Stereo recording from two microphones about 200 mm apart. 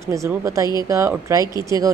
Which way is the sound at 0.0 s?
15° right (ahead or behind).